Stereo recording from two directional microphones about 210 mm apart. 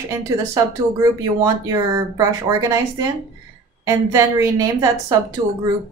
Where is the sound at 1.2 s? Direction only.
15° right (ahead or behind).